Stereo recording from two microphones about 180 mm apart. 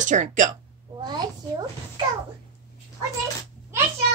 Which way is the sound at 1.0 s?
25° right (ahead or behind).